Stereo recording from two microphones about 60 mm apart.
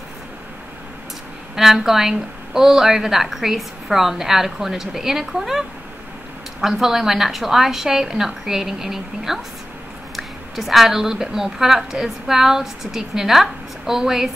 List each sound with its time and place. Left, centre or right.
1.5 s a woman's voice: centre